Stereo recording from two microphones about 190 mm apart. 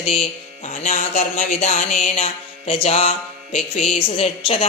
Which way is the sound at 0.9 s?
40° left (ahead or behind).